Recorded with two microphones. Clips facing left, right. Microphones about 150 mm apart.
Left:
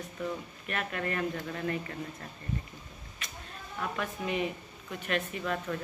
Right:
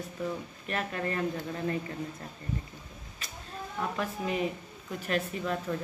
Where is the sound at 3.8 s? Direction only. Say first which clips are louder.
Right 2 dB; 35° right (ahead or behind).